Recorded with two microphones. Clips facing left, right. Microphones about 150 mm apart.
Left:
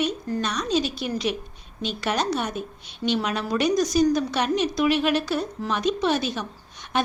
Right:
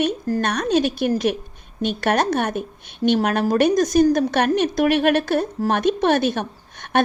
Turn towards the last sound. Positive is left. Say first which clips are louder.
# right 6 dB
turn(degrees=-55)  # may be behind; listen again after turning